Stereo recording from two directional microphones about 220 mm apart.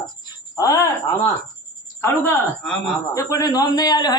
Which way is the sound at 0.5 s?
15° left (ahead or behind).